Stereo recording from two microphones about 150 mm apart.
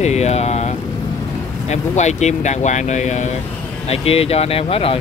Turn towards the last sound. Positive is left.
turn(degrees=40)  # may be behind; listen again after turning